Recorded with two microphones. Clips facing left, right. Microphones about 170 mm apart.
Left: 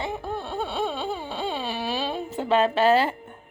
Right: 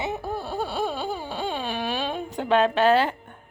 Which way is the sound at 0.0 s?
5° right (ahead or behind).